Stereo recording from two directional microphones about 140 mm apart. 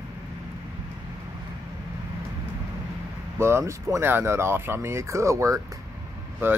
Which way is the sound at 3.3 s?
20° right (ahead or behind).